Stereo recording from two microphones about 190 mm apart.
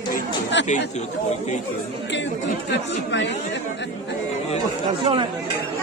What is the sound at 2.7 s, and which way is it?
Speech, 70° left (ahead or behind).